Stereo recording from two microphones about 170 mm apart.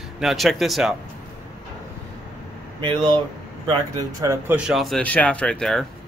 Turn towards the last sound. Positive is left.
turn(degrees=5)  # may be behind; listen again after turning